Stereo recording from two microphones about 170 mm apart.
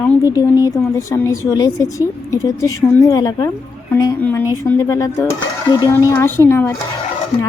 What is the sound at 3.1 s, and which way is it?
Speech, 20° left (ahead or behind).